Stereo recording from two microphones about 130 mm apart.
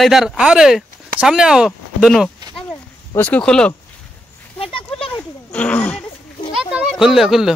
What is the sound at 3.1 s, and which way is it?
Speech, 10° left (ahead or behind).